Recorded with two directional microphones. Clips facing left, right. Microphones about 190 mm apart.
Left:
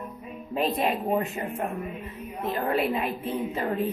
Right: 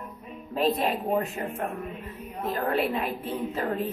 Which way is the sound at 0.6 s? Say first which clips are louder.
Right 1 dB; 5° left (ahead or behind).